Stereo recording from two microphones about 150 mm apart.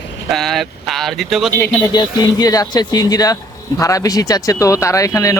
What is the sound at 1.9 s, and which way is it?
Speech, 25° left (ahead or behind).